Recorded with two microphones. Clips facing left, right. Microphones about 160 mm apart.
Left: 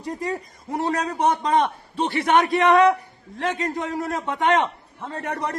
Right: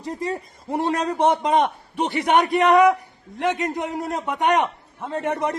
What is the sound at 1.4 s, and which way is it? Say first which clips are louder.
A man's voice: right 1 dB; 20° right (ahead or behind).